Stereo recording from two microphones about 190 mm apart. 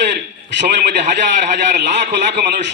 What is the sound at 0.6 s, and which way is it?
A man's voice, 60° right (ahead or behind).